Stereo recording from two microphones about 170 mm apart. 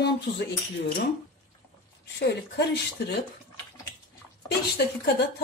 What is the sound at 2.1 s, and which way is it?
Speech, 75° left (ahead or behind).